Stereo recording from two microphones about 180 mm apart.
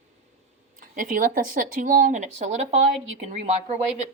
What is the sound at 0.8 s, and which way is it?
Speech, 50° right (ahead or behind).